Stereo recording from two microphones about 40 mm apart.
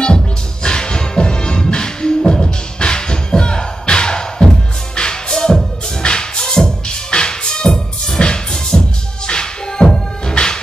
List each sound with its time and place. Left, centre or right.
0.7 s music: left